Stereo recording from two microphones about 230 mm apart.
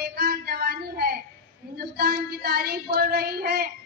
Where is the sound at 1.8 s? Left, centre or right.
Right.